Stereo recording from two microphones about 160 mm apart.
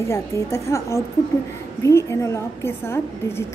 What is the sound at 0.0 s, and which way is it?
A woman's voice, 15° left (ahead or behind).